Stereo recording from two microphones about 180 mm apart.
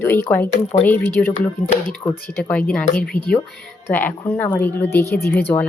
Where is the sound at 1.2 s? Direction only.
10° left (ahead or behind).